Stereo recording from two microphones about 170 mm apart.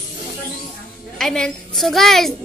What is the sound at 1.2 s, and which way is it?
A woman's voice, 5° left (ahead or behind).